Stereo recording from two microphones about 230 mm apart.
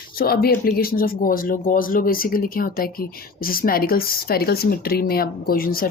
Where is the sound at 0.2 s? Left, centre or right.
Left.